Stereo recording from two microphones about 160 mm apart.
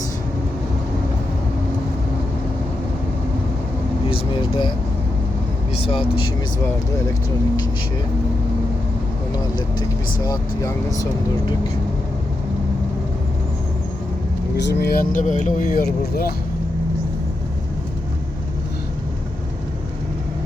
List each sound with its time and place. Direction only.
4.1 s air conditioning: 30° left (ahead or behind)
5.8 s speech: 35° left (ahead or behind)
10.2 s speech: 20° left (ahead or behind)
14.5 s speech: 90° left; by 16.3 s 70° left (ahead or behind)